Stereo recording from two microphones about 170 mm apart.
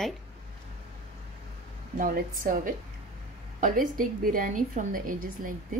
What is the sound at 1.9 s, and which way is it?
A woman's voice, 55° right (ahead or behind).